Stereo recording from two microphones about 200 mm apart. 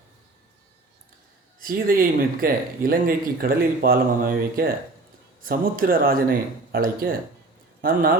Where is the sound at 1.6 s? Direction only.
45° right (ahead or behind).